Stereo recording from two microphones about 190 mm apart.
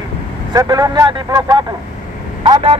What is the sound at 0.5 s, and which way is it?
Speech, 20° right (ahead or behind).